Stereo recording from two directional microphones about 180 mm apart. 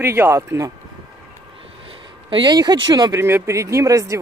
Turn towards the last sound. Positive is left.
turn(degrees=-15)  # may be behind; listen again after turning